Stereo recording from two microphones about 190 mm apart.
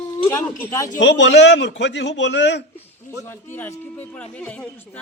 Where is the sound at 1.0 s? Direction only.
70° left (ahead or behind).